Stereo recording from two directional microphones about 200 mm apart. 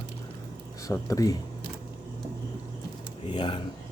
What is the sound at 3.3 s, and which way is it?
Speech, 25° left (ahead or behind).